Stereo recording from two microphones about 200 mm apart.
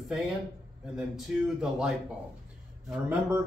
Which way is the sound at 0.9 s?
5° right (ahead or behind).